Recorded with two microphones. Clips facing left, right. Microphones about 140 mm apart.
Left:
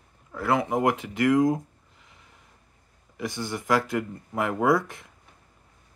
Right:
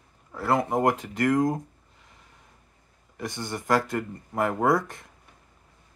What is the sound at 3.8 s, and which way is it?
Speech, 5° left (ahead or behind).